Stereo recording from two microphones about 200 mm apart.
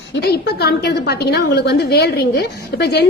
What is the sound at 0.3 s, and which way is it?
A woman's voice, 55° left (ahead or behind).